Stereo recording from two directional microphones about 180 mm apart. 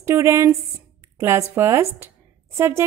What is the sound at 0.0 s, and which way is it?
A woman's voice, 15° right (ahead or behind).